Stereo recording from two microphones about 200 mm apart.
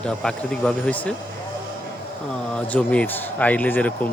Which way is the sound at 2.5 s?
5° left (ahead or behind).